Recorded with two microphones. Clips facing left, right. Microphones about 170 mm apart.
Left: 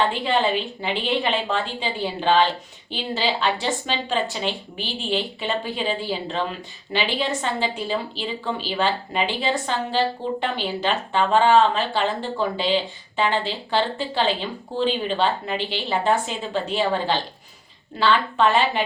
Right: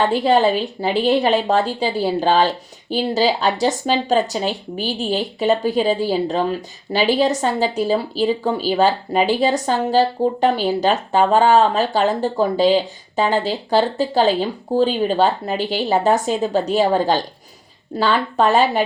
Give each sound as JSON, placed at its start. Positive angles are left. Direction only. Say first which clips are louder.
{"t": 0.1, "sound": "speech", "louder": "right 7 dB", "side_deg": -40}